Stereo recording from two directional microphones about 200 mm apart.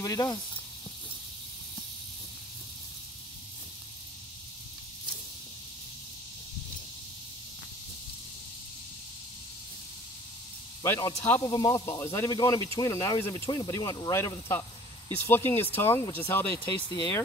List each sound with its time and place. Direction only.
0.0 s speech: 15° left (ahead or behind)
10.8 s speech: 15° left (ahead or behind)
16.5 s speech: 20° left (ahead or behind)